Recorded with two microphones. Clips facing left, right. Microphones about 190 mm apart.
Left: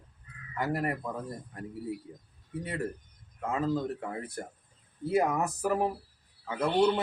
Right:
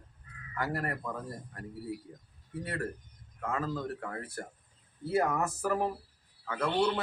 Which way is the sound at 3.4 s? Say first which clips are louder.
Left 4 dB; 15° left (ahead or behind).